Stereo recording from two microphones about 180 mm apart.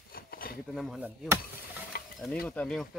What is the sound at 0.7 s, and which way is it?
Speech, centre (ahead or behind).